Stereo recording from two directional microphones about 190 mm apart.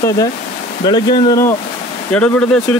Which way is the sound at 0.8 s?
25° left (ahead or behind).